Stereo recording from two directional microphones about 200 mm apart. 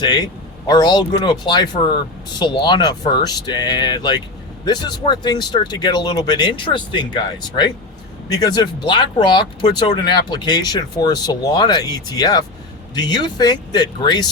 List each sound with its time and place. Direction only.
0.0 s speech: 20° left (ahead or behind)
8.3 s speech: 20° left (ahead or behind)